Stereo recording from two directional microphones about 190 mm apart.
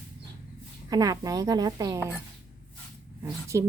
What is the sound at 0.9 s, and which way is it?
Speech, 20° right (ahead or behind).